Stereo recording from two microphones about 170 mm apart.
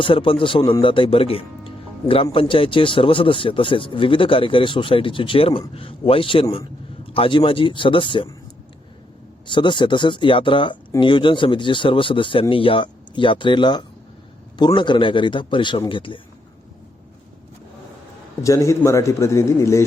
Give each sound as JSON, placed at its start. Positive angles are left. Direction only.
{"t": 0.0, "sound": "speech", "side_deg": 30}
{"t": 9.5, "sound": "speech", "side_deg": 30}
{"t": 18.4, "sound": "a man's voice", "side_deg": 20}